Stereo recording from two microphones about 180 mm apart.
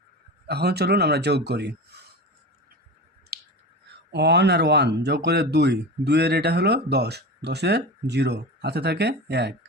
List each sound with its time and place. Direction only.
0.4 s speech: 65° right (ahead or behind)
3.3 s finger snapping: 60° right (ahead or behind)
4.1 s speech: 70° right (ahead or behind)